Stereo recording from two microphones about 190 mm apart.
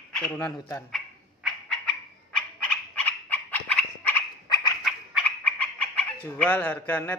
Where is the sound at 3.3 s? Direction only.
10° left (ahead or behind).